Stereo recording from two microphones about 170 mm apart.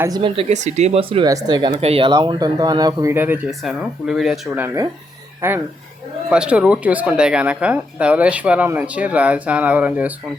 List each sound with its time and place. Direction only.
0.2 s speech: 40° right (ahead or behind)
1.3 s speech: 20° right (ahead or behind)
3.6 s speech: centre (ahead or behind)